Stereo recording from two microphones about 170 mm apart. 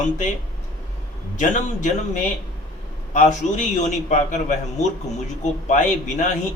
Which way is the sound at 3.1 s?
45° left (ahead or behind).